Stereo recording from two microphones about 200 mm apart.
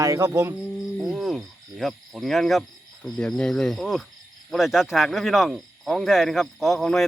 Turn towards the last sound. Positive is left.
turn(degrees=0)  # may be behind; listen again after turning